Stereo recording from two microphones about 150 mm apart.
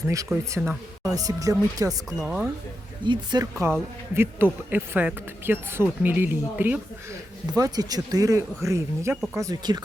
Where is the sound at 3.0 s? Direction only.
30° right (ahead or behind).